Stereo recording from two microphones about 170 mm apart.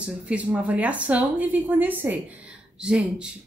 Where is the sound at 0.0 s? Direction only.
5° right (ahead or behind).